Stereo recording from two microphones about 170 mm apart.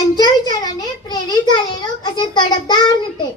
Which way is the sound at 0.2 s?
25° left (ahead or behind).